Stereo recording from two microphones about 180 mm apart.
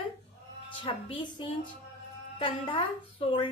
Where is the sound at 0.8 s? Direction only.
30° left (ahead or behind).